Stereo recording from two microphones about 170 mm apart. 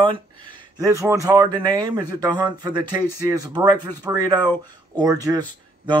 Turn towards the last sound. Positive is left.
turn(degrees=-25)  # may be behind; listen again after turning